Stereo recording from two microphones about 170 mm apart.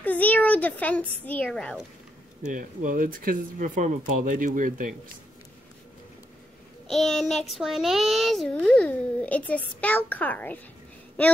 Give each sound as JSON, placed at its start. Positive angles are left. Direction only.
{"t": 0.0, "sound": "speech", "side_deg": 10}
{"t": 2.4, "sound": "speech", "side_deg": -50}
{"t": 6.9, "sound": "a child's voice", "side_deg": 0}